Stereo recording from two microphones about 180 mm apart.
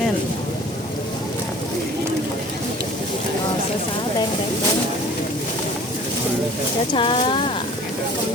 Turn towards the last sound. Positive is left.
turn(degrees=30)  # may be behind; listen again after turning